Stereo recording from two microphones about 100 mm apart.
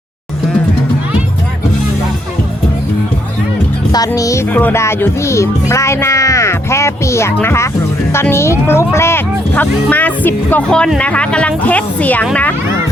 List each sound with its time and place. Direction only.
3.9 s speech: 35° left (ahead or behind)
4.4 s speech: 15° left (ahead or behind)
10.7 s speech: 5° left (ahead or behind)